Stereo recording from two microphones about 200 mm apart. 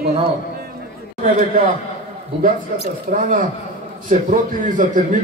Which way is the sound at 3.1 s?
40° right (ahead or behind).